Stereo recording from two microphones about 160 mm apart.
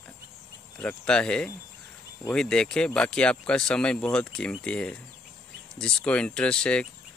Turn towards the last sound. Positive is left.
turn(degrees=5)  # may be behind; listen again after turning